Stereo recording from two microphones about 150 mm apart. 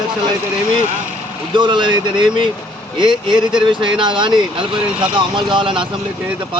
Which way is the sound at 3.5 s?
30° right (ahead or behind).